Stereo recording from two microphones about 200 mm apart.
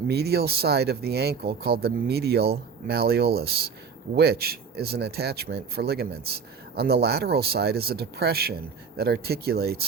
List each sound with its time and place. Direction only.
0.1 s speech: 55° right (ahead or behind)